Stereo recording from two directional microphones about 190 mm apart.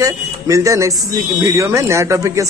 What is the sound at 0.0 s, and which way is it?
A man's voice, 15° right (ahead or behind).